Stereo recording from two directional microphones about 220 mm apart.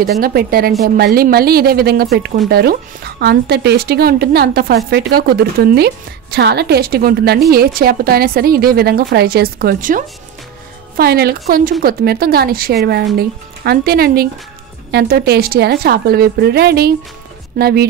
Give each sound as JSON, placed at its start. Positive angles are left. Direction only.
{"t": 0.2, "sound": "a woman's voice", "side_deg": -40}